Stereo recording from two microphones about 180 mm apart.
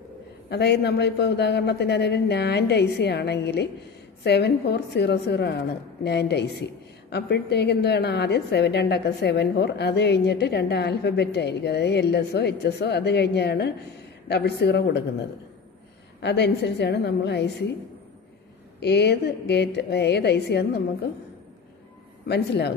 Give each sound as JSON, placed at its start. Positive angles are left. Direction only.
{"t": 0.5, "sound": "a woman's voice", "side_deg": 65}
{"t": 16.2, "sound": "a woman's voice", "side_deg": 70}
{"t": 18.8, "sound": "a woman's voice", "side_deg": 65}
{"t": 22.3, "sound": "a woman's voice", "side_deg": 65}